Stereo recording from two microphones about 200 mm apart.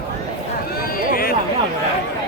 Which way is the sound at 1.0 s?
45° left (ahead or behind).